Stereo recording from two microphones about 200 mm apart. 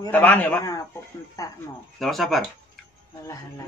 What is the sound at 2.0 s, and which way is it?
Speech, centre (ahead or behind).